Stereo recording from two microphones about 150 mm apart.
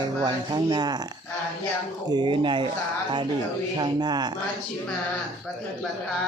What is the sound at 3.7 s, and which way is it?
Speech, 30° right (ahead or behind).